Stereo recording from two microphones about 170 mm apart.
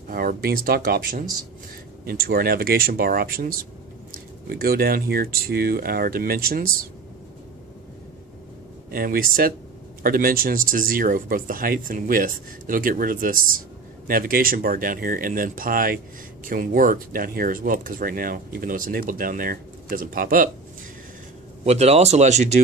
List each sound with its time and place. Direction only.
0.1 s speech: 60° right (ahead or behind)
8.9 s speech: 60° right (ahead or behind)
21.6 s a man's voice: 40° right (ahead or behind)